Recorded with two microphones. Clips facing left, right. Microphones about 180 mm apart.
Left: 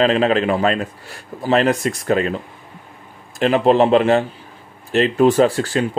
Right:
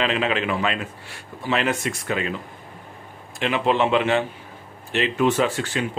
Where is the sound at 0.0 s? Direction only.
40° left (ahead or behind).